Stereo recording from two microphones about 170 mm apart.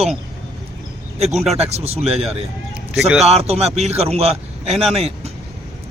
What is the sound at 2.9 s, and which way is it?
Speech, centre (ahead or behind).